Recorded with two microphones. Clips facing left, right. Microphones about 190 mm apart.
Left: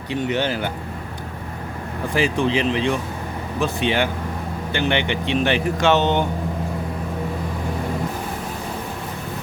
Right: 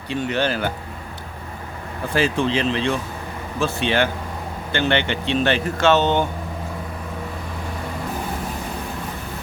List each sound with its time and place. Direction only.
0.1 s speech: 20° left (ahead or behind)
2.1 s speech: 15° left (ahead or behind)